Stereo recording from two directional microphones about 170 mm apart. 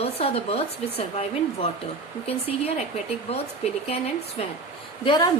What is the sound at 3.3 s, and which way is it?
Speech, 35° left (ahead or behind).